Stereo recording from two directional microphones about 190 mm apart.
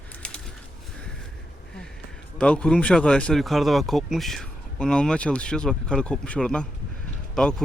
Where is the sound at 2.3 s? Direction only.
5° left (ahead or behind).